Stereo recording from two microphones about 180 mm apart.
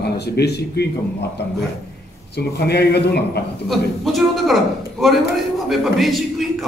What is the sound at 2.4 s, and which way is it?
Speech, 65° left (ahead or behind).